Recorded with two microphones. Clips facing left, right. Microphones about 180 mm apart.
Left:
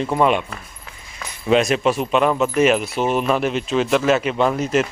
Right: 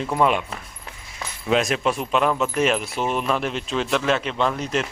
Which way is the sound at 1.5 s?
Centre (ahead or behind).